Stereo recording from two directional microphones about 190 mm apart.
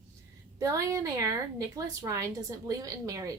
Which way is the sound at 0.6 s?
15° right (ahead or behind).